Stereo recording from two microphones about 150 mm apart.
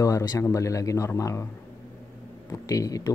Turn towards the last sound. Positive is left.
turn(degrees=20)  # may be behind; listen again after turning